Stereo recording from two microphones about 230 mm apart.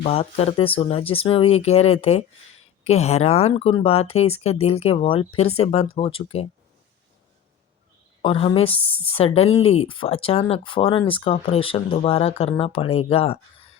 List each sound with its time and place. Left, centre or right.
0.0 s speech: left
8.2 s speech: left